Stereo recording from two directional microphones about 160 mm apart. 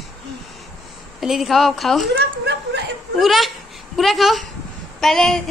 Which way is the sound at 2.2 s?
90° right.